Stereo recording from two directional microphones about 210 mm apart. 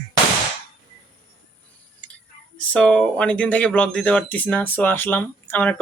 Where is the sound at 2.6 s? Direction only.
5° left (ahead or behind).